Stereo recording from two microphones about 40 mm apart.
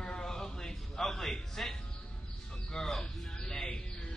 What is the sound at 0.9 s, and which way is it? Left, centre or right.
Music, centre.